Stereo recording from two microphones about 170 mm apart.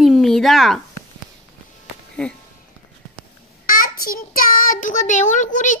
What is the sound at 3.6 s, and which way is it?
A child's voice, 55° left (ahead or behind).